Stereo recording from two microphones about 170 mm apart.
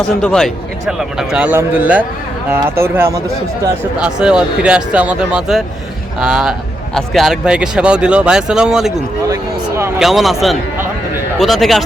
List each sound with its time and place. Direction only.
0.0 s a man's voice: 5° left (ahead or behind)
9.3 s speech: 15° right (ahead or behind)
10.0 s a man's voice: centre (ahead or behind)